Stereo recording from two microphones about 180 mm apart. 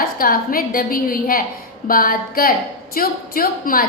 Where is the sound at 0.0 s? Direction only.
55° left (ahead or behind).